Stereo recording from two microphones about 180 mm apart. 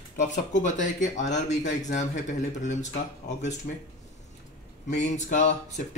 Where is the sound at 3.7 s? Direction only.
50° left (ahead or behind).